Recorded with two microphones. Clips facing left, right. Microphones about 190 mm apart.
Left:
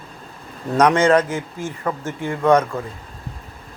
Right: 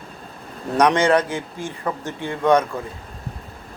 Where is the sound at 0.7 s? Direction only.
15° right (ahead or behind).